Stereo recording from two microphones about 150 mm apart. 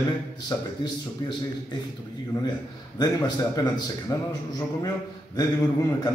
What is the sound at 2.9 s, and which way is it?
A man's voice, 25° left (ahead or behind).